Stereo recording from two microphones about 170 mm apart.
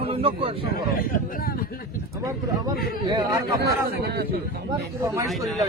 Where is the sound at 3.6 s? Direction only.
65° right (ahead or behind).